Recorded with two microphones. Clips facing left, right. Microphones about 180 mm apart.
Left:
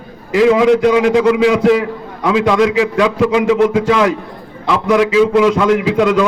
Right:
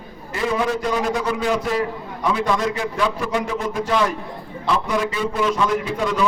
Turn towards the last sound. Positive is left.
turn(degrees=90)